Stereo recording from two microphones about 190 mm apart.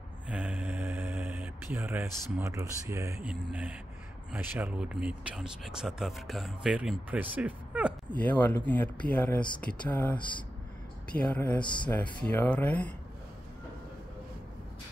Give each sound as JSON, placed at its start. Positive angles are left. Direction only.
{"t": 0.3, "sound": "mantra", "side_deg": -5}
{"t": 2.3, "sound": "speech", "side_deg": -15}
{"t": 8.1, "sound": "speech", "side_deg": 10}
{"t": 11.6, "sound": "speech", "side_deg": 25}
{"t": 11.9, "sound": "speech", "side_deg": 10}